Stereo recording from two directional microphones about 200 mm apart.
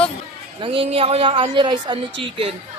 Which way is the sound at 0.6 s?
25° right (ahead or behind).